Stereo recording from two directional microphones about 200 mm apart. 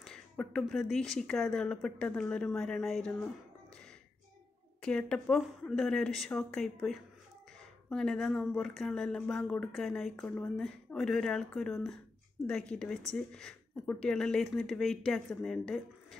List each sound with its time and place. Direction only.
0.0 s speech: 5° left (ahead or behind)
4.8 s speech: 5° left (ahead or behind)